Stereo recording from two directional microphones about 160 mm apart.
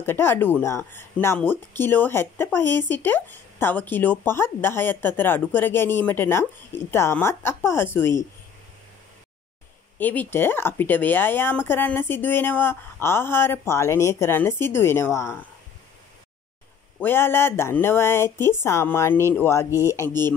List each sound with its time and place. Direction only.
0.0 s speech: 15° left (ahead or behind)
9.9 s speech: 10° left (ahead or behind)
17.0 s speech: 15° left (ahead or behind)